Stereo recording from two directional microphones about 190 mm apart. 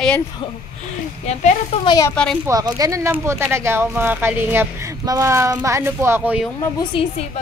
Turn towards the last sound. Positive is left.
turn(degrees=25)  # may be behind; listen again after turning